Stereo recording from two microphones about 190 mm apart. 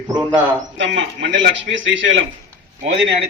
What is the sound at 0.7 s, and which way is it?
A man's voice, 75° right (ahead or behind).